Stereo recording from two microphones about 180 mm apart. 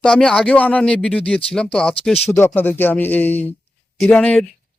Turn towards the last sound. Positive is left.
turn(degrees=10)  # may be behind; listen again after turning